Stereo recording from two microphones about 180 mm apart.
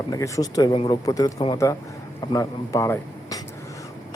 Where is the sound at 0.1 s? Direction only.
20° left (ahead or behind).